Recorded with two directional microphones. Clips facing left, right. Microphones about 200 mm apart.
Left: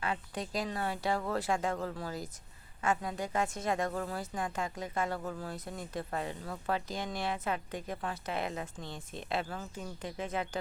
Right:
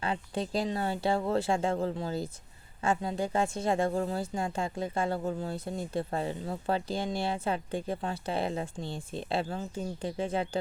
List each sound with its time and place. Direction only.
0.0 s speech: 30° right (ahead or behind)